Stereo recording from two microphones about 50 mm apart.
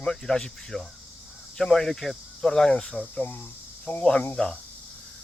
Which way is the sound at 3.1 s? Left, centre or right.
Left.